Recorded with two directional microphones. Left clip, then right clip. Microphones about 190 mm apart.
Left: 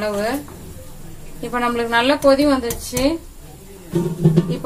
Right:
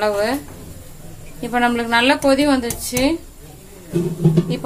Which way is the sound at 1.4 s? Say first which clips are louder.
Right 2 dB; 35° right (ahead or behind).